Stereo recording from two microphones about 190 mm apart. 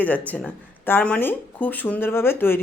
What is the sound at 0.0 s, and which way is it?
Speech, 10° left (ahead or behind).